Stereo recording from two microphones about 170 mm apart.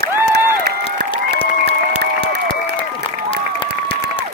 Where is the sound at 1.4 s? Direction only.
35° left (ahead or behind).